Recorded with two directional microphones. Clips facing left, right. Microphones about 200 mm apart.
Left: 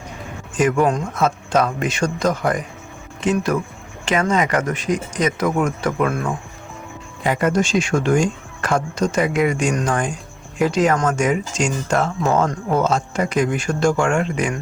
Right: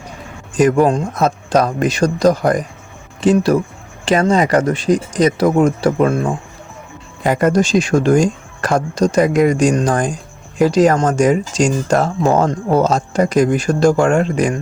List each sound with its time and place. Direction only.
0.5 s speech: 35° right (ahead or behind)
7.3 s speech: 40° right (ahead or behind)